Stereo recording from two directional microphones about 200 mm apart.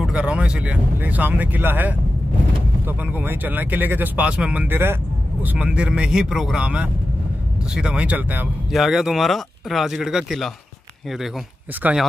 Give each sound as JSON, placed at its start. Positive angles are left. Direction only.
{"t": 0.0, "sound": "speech", "side_deg": -5}
{"t": 11.8, "sound": "speech", "side_deg": -5}